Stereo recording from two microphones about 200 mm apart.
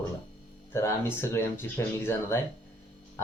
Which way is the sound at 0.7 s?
15° left (ahead or behind).